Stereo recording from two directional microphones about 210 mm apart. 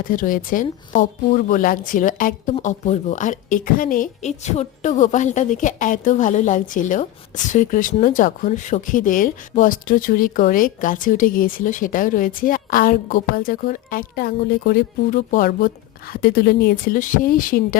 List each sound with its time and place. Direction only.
0.0 s speech: 40° left (ahead or behind)